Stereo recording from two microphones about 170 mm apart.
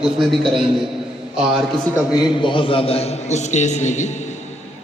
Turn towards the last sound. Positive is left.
turn(degrees=45)  # may be behind; listen again after turning